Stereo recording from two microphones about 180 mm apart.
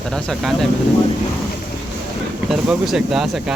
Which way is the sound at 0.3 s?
Centre (ahead or behind).